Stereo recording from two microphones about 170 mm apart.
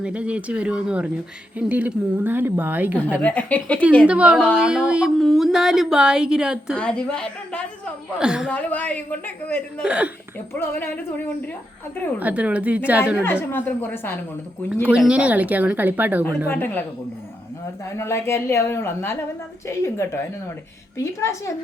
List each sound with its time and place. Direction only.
0.0 s speech: 5° right (ahead or behind)
3.2 s speech: 10° left (ahead or behind)
4.0 s speech: 5° right (ahead or behind)
8.2 s speech: 5° right (ahead or behind)
8.4 s speech: 10° left (ahead or behind)
9.8 s speech: 5° right (ahead or behind)
10.3 s speech: 15° left (ahead or behind)
12.2 s speech: 10° right (ahead or behind)
13.2 s speech: 15° left (ahead or behind)
14.8 s speech: 5° right (ahead or behind)
16.5 s speech: 10° left (ahead or behind)
17.8 s speech: 15° left (ahead or behind)